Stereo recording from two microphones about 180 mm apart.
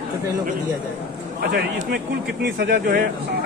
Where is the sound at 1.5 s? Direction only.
60° right (ahead or behind).